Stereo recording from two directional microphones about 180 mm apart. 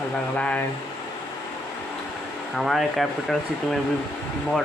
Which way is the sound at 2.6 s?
Centre (ahead or behind).